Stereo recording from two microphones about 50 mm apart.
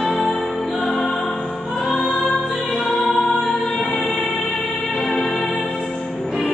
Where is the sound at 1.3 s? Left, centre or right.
Centre.